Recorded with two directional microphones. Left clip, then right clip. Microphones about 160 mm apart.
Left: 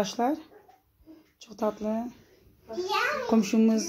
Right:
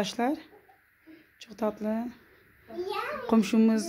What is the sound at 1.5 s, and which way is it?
Speech, 15° right (ahead or behind).